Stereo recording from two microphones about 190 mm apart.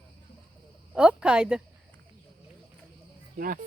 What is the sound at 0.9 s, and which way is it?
Speech, 5° right (ahead or behind).